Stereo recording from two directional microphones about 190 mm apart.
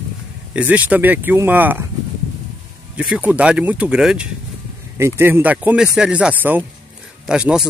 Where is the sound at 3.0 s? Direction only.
5° right (ahead or behind).